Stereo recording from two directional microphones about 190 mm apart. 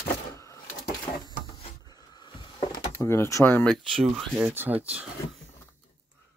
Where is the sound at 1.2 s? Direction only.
20° left (ahead or behind).